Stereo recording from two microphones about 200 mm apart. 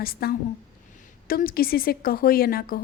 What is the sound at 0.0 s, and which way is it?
A woman's voice, 50° left (ahead or behind).